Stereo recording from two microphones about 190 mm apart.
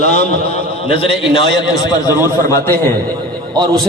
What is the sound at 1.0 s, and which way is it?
Speech, 25° left (ahead or behind).